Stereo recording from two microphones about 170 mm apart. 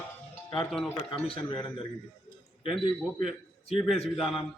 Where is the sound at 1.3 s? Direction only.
30° left (ahead or behind).